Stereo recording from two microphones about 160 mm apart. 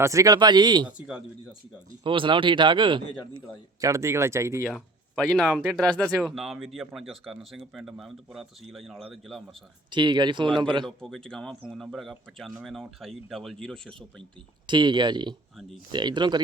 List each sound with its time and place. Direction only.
0.0 s speech: 20° right (ahead or behind)
0.9 s speech: 5° right (ahead or behind)
2.0 s speech: 30° right (ahead or behind)
3.8 s speech: 20° right (ahead or behind)
4.6 s speech: 5° left (ahead or behind)
9.9 s speech: 30° right (ahead or behind)
10.8 s speech: 5° left (ahead or behind)
14.7 s speech: 30° right (ahead or behind)